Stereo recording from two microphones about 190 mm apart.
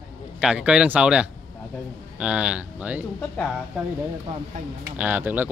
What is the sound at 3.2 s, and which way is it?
Speech, 5° left (ahead or behind).